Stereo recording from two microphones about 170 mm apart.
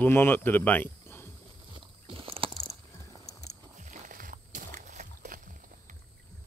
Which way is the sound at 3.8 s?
50° right (ahead or behind).